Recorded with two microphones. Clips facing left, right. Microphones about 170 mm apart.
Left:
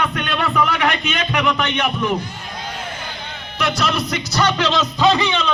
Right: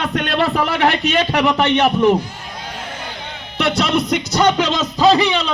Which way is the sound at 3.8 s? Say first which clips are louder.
Right 4 dB; 55° right (ahead or behind).